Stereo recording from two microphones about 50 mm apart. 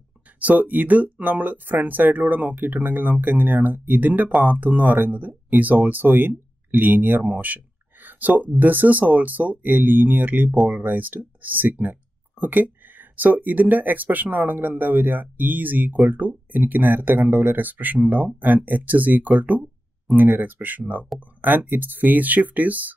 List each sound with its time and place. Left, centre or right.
0.4 s speech: right